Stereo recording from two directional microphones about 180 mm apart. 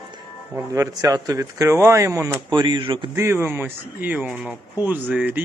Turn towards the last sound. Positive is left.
turn(degrees=-10)  # may be behind; listen again after turning